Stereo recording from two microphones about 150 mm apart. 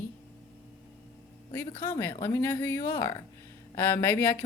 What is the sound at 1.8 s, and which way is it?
A woman's voice, 15° left (ahead or behind).